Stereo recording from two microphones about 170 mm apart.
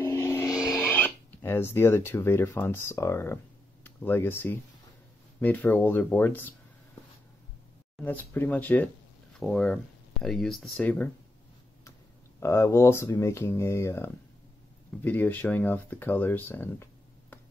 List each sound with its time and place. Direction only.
0.0 s music: 15° left (ahead or behind)
0.5 s music: 5° right (ahead or behind)
0.8 s speech: 10° left (ahead or behind)
8.0 s speech: 10° left (ahead or behind)
12.4 s speech: 15° left (ahead or behind)